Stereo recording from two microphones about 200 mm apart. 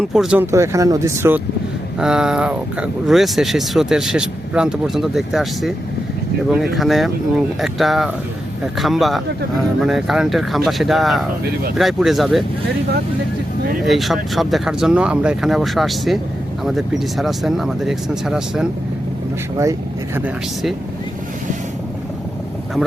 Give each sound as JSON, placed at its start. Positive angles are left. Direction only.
{"t": 0.1, "sound": "speech", "side_deg": -5}
{"t": 13.8, "sound": "speech", "side_deg": 0}
{"t": 20.1, "sound": "speech", "side_deg": -5}